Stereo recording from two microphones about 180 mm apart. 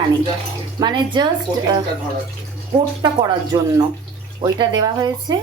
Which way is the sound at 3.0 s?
25° right (ahead or behind).